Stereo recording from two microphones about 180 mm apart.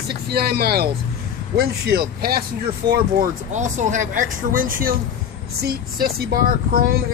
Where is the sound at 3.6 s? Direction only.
45° right (ahead or behind).